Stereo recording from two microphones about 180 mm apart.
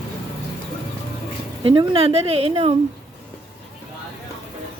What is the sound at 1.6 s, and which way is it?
Speech, 30° right (ahead or behind).